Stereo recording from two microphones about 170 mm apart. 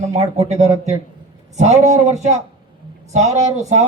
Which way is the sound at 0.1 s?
40° right (ahead or behind).